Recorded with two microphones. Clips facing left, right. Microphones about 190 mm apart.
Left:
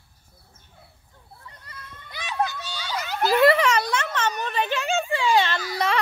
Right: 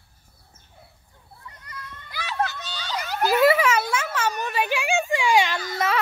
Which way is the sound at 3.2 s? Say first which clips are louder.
Even; 5° right (ahead or behind).